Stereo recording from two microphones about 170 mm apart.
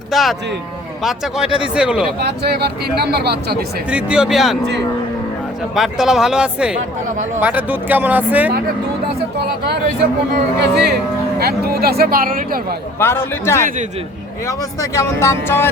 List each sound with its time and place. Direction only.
0.1 s speech: centre (ahead or behind)
2.1 s speech: 75° right (ahead or behind)
3.8 s speech: 5° right (ahead or behind)
5.7 s speech: 5° right (ahead or behind)
10.6 s speech: 75° right (ahead or behind); by 12.5 s 55° right (ahead or behind)
13.0 s speech: 15° left (ahead or behind)